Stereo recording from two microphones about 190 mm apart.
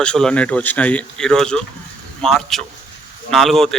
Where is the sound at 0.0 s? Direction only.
5° left (ahead or behind).